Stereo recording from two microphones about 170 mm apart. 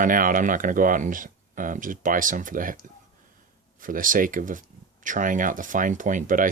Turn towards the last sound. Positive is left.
turn(degrees=-50)  # may be behind; listen again after turning